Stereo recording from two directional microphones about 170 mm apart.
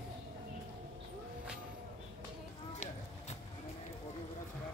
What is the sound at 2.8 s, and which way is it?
Clip-clop, 45° left (ahead or behind).